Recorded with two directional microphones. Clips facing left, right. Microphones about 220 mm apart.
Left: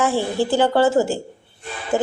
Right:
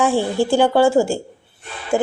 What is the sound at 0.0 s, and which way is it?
A woman's voice, 15° right (ahead or behind).